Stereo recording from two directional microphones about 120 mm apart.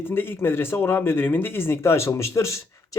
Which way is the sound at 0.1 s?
20° left (ahead or behind).